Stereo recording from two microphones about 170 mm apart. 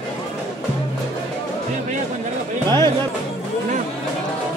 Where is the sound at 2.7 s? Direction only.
25° right (ahead or behind).